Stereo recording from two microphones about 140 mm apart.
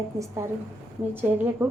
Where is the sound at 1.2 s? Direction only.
15° right (ahead or behind).